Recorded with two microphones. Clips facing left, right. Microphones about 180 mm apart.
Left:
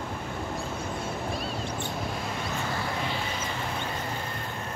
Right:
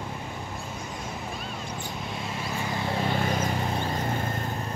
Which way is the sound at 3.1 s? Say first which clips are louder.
Right 6 dB; 50° right (ahead or behind).